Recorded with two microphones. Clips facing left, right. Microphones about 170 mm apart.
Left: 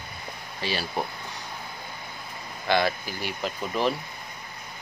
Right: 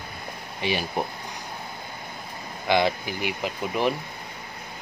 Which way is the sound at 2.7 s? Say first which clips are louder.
Right 2 dB; 15° right (ahead or behind).